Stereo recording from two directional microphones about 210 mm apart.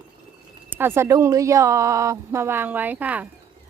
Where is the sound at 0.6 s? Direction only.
10° right (ahead or behind).